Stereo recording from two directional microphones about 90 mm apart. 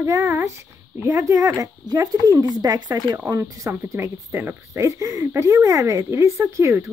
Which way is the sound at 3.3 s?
35° right (ahead or behind).